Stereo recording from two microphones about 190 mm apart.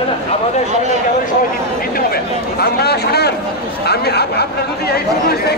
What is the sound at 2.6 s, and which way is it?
Speech, 55° left (ahead or behind).